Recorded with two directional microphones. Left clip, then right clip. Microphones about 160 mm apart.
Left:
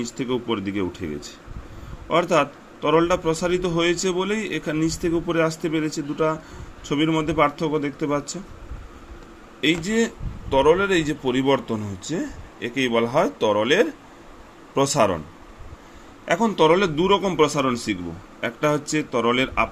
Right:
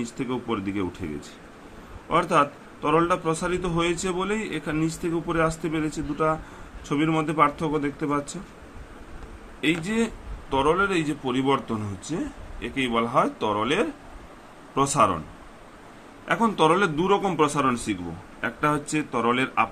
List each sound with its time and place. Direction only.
0.0 s a man's voice: 20° left (ahead or behind)
9.6 s a man's voice: 20° left (ahead or behind)
16.2 s a man's voice: 25° left (ahead or behind)